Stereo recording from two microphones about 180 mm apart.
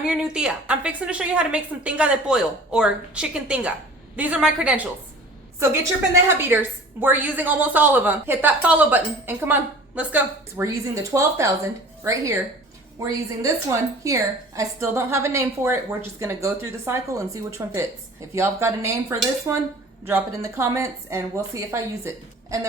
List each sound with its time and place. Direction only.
0.0 s a woman's voice: 5° right (ahead or behind)
6.2 s a woman's voice: 10° right (ahead or behind)